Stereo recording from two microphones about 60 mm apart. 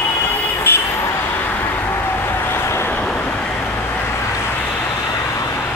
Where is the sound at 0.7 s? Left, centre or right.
Left.